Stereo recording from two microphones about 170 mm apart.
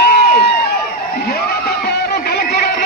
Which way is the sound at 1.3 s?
70° left (ahead or behind).